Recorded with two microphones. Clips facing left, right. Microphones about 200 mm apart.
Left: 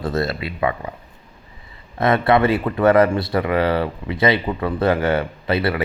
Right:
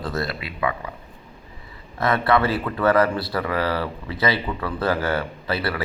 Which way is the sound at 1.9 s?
25° left (ahead or behind).